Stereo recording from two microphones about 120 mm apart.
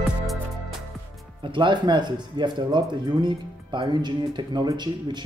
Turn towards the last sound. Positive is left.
turn(degrees=-35)  # may be behind; listen again after turning